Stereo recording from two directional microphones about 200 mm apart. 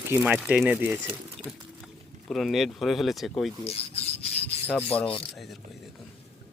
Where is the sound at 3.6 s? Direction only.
30° left (ahead or behind).